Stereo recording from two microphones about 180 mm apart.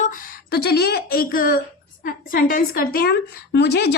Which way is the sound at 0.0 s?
50° left (ahead or behind).